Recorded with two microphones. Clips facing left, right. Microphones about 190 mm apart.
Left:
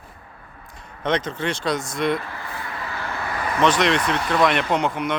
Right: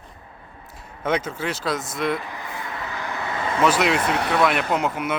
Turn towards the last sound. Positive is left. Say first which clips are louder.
# left 1 dB
turn(degrees=-5)  # may be behind; listen again after turning